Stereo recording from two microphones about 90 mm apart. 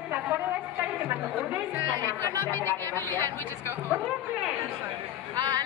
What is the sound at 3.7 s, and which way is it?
Speech, 25° right (ahead or behind).